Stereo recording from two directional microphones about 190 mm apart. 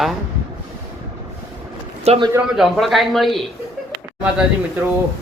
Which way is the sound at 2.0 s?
30° right (ahead or behind).